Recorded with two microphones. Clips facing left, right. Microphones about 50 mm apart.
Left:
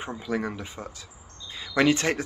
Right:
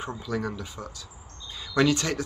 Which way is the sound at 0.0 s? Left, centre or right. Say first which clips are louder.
Left 1 dB; left.